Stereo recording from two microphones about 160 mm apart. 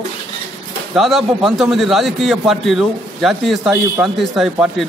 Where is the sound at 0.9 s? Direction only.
Centre (ahead or behind).